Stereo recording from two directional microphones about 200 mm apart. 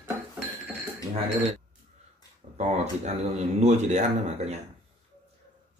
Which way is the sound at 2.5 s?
35° right (ahead or behind).